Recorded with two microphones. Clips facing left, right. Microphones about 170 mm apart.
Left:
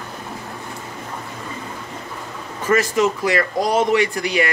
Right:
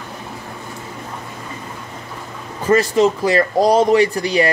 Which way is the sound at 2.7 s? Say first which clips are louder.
Right 4 dB; 30° right (ahead or behind).